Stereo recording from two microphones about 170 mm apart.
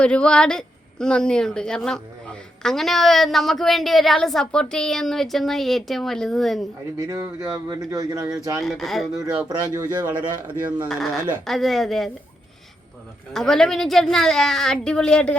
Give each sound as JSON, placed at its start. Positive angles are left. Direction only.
{"t": 0.0, "sound": "a woman's voice", "side_deg": 5}
{"t": 7.7, "sound": "speech", "side_deg": -20}
{"t": 8.5, "sound": "a woman's voice", "side_deg": 0}
{"t": 9.5, "sound": "speech", "side_deg": -25}
{"t": 10.1, "sound": "speech", "side_deg": -10}
{"t": 10.8, "sound": "a woman's voice", "side_deg": 0}
{"t": 13.3, "sound": "a woman's voice", "side_deg": 5}